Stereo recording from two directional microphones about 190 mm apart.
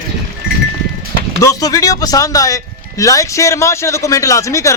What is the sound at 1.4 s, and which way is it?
Speech, 20° left (ahead or behind).